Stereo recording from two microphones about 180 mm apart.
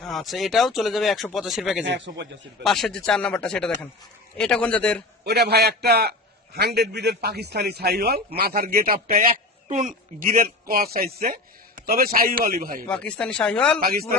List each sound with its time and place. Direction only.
0.0 s speech: centre (ahead or behind)
1.8 s speech: 75° right (ahead or behind)
2.6 s speech: centre (ahead or behind)
5.2 s a man's voice: 65° right (ahead or behind)
12.9 s speech: 5° left (ahead or behind)
13.8 s a man's voice: 55° right (ahead or behind)